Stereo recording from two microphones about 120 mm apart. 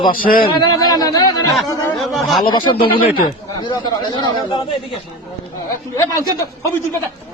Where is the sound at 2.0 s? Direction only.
Centre (ahead or behind).